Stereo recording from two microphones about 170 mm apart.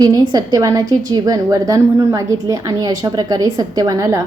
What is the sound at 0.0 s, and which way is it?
A woman's voice, 25° right (ahead or behind).